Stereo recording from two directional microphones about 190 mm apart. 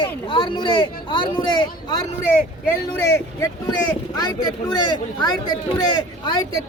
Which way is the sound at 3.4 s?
20° left (ahead or behind).